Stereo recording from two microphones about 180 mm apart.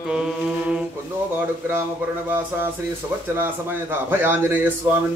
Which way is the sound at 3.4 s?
10° right (ahead or behind).